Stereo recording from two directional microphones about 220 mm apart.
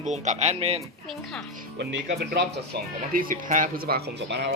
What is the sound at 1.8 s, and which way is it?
Speech, 50° right (ahead or behind).